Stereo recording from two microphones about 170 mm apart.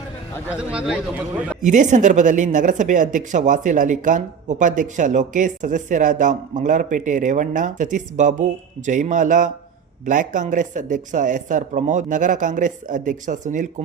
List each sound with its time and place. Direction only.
0.5 s speech: 5° right (ahead or behind)
1.6 s speech: 45° right (ahead or behind)